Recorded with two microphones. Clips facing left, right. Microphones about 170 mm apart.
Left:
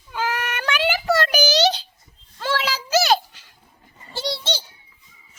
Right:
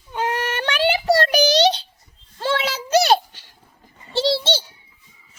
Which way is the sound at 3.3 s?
30° right (ahead or behind).